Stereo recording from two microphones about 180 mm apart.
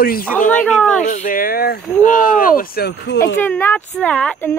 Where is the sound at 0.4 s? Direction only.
45° left (ahead or behind).